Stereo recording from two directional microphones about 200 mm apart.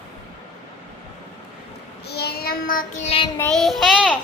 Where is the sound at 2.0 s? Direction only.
55° left (ahead or behind).